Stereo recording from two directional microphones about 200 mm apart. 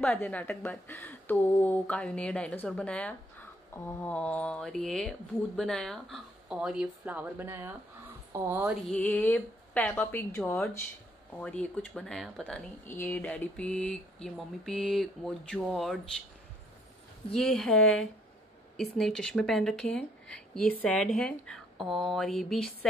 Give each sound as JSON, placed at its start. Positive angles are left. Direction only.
{"t": 0.0, "sound": "a woman's voice", "side_deg": 10}
{"t": 8.8, "sound": "a woman's voice", "side_deg": 5}
{"t": 17.3, "sound": "speech", "side_deg": 5}
{"t": 18.8, "sound": "speech", "side_deg": 0}